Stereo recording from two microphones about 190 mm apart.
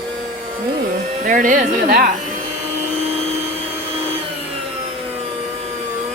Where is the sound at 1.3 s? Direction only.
45° right (ahead or behind).